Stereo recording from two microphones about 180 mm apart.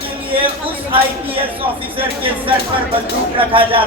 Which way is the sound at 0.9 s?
30° right (ahead or behind).